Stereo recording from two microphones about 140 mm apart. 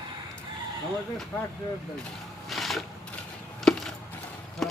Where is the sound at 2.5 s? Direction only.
Centre (ahead or behind).